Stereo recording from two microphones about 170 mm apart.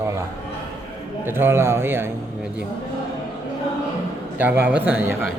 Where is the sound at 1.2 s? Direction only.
15° right (ahead or behind).